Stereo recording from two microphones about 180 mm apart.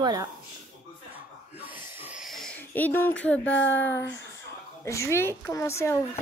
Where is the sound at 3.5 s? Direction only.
90° left.